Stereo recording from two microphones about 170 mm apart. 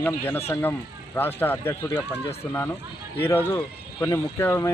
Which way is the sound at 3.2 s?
10° left (ahead or behind).